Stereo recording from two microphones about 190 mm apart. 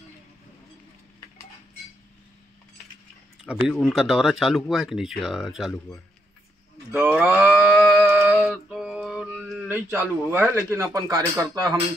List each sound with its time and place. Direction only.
3.6 s speech: centre (ahead or behind)
6.9 s livestock: 10° right (ahead or behind)
9.8 s a man's voice: 10° right (ahead or behind)